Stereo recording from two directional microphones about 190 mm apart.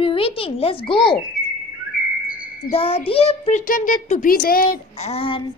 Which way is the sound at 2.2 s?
50° left (ahead or behind).